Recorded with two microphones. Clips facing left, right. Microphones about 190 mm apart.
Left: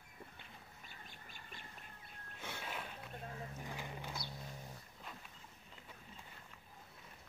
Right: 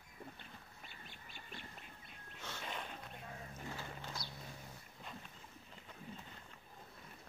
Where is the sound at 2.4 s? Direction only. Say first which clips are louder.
Even; 10° left (ahead or behind).